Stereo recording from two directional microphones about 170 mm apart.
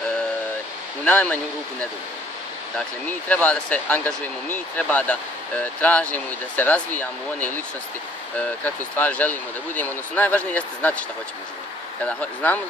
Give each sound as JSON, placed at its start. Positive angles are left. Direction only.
{"t": 1.0, "sound": "speech", "side_deg": 10}
{"t": 3.1, "sound": "speech", "side_deg": 10}
{"t": 12.1, "sound": "speech", "side_deg": 10}